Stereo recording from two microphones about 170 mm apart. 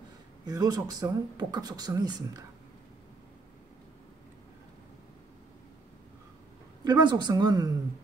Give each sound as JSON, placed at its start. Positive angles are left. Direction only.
{"t": 0.5, "sound": "speech", "side_deg": -20}
{"t": 6.9, "sound": "speech", "side_deg": -25}